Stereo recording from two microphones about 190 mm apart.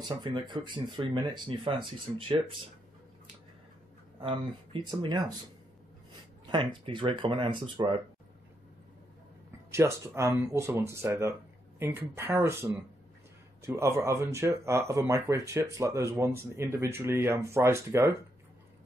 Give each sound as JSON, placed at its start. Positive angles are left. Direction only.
{"t": 0.2, "sound": "speech", "side_deg": -25}
{"t": 4.2, "sound": "speech", "side_deg": -25}
{"t": 6.4, "sound": "speech", "side_deg": -25}
{"t": 9.7, "sound": "speech", "side_deg": -15}